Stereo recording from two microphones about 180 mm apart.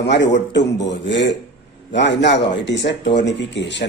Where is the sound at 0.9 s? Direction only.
85° left.